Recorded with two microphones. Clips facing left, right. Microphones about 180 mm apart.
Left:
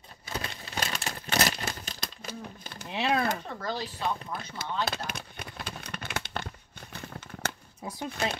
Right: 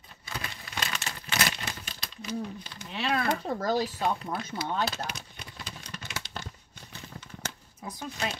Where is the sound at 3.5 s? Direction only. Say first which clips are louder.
Right 7 dB; 40° right (ahead or behind).